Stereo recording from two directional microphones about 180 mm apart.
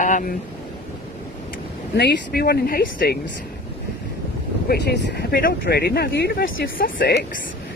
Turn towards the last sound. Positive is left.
turn(degrees=60)  # may be behind; listen again after turning